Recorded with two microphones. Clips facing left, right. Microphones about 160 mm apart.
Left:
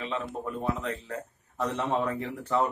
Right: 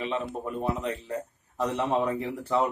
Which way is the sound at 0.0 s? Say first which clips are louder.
Right 2 dB; 15° right (ahead or behind).